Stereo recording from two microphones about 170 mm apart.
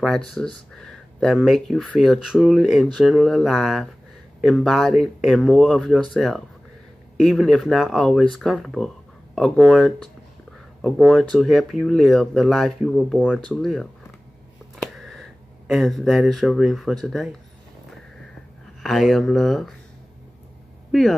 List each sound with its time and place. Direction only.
0.0 s speech: centre (ahead or behind)
15.0 s speech: centre (ahead or behind)
18.8 s speech: centre (ahead or behind)
20.9 s speech: centre (ahead or behind)